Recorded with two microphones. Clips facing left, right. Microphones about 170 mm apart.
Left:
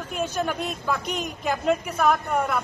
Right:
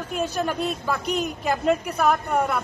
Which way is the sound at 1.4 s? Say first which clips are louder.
Even; centre (ahead or behind).